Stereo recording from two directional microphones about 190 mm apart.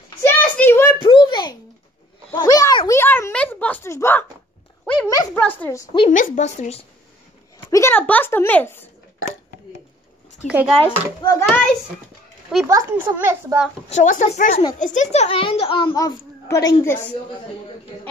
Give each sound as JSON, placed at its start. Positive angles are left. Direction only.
{"t": 0.2, "sound": "a sound", "side_deg": 10}
{"t": 1.0, "sound": "a sound", "side_deg": 25}
{"t": 2.3, "sound": "a child's voice", "side_deg": 20}
{"t": 6.0, "sound": "a woman's voice", "side_deg": 40}
{"t": 7.7, "sound": "a child's voice", "side_deg": 10}
{"t": 10.4, "sound": "speech", "side_deg": -5}
{"t": 10.8, "sound": "a child's voice", "side_deg": 10}
{"t": 12.6, "sound": "a child's voice", "side_deg": -15}
{"t": 13.8, "sound": "a woman's voice", "side_deg": 40}